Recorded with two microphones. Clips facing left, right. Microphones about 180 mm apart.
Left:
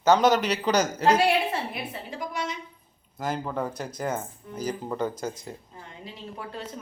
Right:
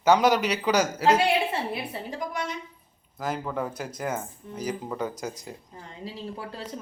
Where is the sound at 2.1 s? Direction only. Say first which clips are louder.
Even; 55° right (ahead or behind).